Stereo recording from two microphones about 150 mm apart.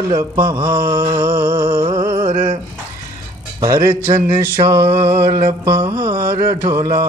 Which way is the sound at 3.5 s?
25° right (ahead or behind).